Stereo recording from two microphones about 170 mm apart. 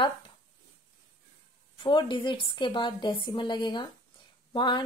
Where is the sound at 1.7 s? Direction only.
30° left (ahead or behind).